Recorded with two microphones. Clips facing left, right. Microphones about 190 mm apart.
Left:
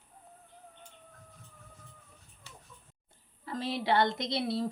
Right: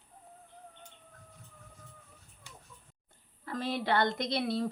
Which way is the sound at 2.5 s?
15° right (ahead or behind).